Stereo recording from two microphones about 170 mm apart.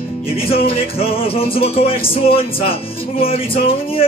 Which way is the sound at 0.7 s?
35° left (ahead or behind).